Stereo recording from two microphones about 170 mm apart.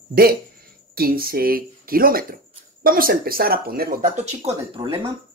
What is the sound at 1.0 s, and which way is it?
Speech, 60° right (ahead or behind).